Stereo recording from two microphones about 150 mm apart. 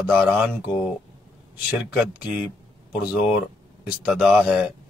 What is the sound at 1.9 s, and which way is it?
Speech, 10° right (ahead or behind).